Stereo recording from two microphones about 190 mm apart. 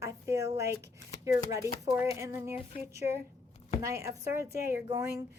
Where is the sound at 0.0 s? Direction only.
15° right (ahead or behind).